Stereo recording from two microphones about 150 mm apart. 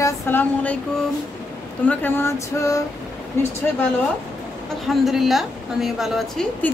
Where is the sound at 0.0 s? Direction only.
15° left (ahead or behind).